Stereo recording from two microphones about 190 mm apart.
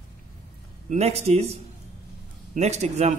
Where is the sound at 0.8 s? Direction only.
35° right (ahead or behind).